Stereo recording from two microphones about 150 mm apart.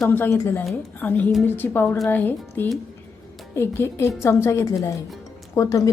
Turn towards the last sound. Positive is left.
turn(degrees=20)  # may be behind; listen again after turning